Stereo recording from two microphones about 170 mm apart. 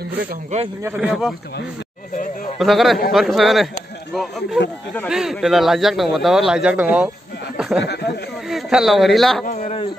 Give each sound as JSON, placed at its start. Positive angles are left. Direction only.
{"t": 0.8, "sound": "speech", "side_deg": -5}
{"t": 2.6, "sound": "speech", "side_deg": 0}
{"t": 7.5, "sound": "a sound", "side_deg": -5}
{"t": 7.8, "sound": "speech", "side_deg": 75}
{"t": 8.5, "sound": "speech", "side_deg": 0}
{"t": 9.5, "sound": "speech", "side_deg": 40}